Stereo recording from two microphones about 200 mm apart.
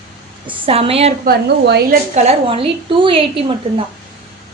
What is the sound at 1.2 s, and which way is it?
Speech, 50° right (ahead or behind).